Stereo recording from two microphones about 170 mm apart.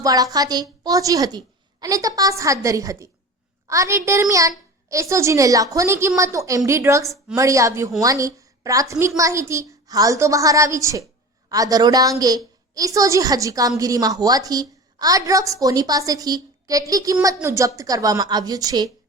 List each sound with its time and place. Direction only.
0.0 s a woman's voice: 20° right (ahead or behind)